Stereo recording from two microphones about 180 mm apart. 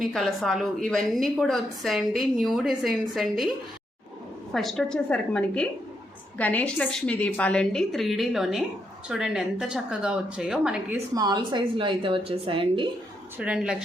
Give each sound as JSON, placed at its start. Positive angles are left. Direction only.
{"t": 0.0, "sound": "a woman's voice", "side_deg": 0}
{"t": 4.5, "sound": "a woman's voice", "side_deg": 0}
{"t": 11.1, "sound": "a woman's voice", "side_deg": -20}
{"t": 13.4, "sound": "a woman's voice", "side_deg": -5}